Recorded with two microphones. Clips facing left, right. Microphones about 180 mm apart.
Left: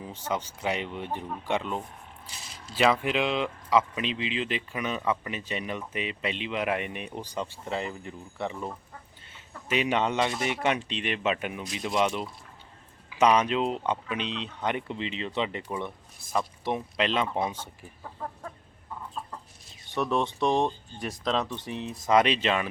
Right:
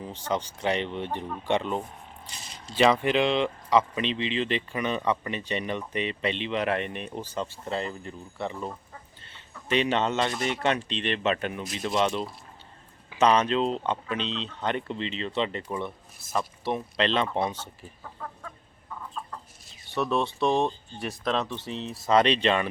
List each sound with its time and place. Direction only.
0.1 s speech: 5° left (ahead or behind)
9.2 s a sound: 5° left (ahead or behind)
10.4 s speech: 10° left (ahead or behind)
19.9 s speech: 15° left (ahead or behind)